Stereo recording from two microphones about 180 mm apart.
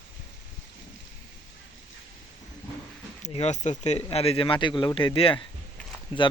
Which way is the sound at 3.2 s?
40° left (ahead or behind).